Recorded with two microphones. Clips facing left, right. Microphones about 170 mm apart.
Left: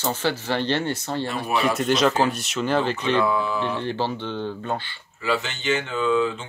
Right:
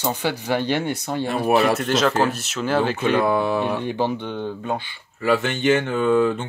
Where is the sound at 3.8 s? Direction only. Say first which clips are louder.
Right 3 dB; 15° right (ahead or behind).